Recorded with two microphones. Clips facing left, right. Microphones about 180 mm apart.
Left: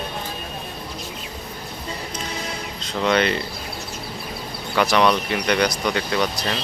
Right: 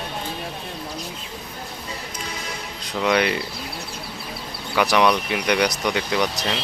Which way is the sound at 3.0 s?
10° right (ahead or behind).